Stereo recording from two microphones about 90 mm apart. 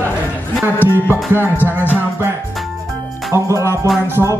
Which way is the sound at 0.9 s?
25° right (ahead or behind).